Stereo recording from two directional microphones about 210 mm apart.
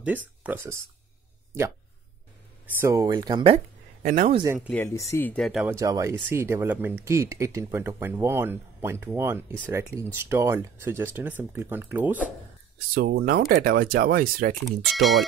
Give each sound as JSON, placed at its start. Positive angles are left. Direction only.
{"t": 0.0, "sound": "speech", "side_deg": -5}
{"t": 2.6, "sound": "speech", "side_deg": -15}
{"t": 4.0, "sound": "speech", "side_deg": -35}
{"t": 4.6, "sound": "speech", "side_deg": 5}
{"t": 12.9, "sound": "speech", "side_deg": -45}
{"t": 14.6, "sound": "speech", "side_deg": 0}